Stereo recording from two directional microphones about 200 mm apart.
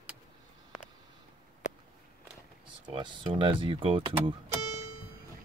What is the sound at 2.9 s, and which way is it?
Speech, 25° right (ahead or behind).